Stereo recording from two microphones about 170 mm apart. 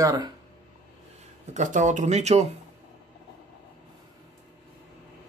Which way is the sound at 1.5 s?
45° right (ahead or behind).